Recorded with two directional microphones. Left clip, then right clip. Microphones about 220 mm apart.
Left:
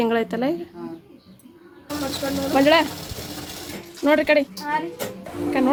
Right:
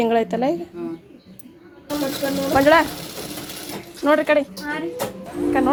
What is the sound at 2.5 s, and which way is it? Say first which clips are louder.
Speech: right 2 dB; 5° left (ahead or behind).